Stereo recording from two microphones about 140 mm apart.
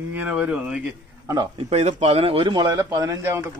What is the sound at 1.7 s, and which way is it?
Speech, 50° right (ahead or behind).